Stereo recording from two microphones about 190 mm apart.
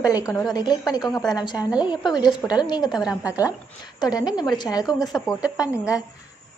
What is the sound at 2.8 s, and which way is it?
Speech, centre (ahead or behind).